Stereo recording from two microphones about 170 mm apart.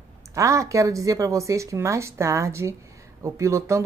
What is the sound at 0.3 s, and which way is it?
Speech, 20° right (ahead or behind).